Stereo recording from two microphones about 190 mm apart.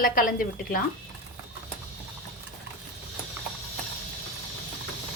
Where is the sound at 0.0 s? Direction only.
45° left (ahead or behind).